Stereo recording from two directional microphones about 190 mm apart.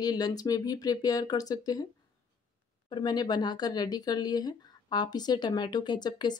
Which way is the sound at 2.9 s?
20° left (ahead or behind).